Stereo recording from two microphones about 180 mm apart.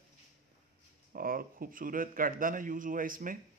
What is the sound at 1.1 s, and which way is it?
Speech, 55° right (ahead or behind).